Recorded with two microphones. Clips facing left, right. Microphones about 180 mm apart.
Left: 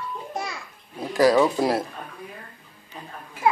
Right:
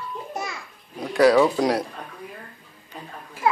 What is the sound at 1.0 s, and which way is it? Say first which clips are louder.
Speech: right 2 dB; centre (ahead or behind).